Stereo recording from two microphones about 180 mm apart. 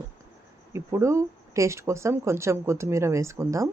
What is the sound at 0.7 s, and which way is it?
Speech, 15° right (ahead or behind).